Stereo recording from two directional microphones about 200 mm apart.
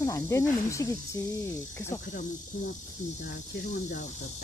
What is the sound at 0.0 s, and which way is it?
Speech, 15° left (ahead or behind).